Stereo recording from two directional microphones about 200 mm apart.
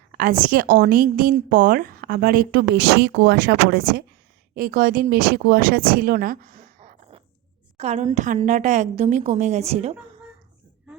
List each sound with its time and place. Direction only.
0.2 s a woman's voice: 45° right (ahead or behind)
7.8 s a woman's voice: 35° right (ahead or behind)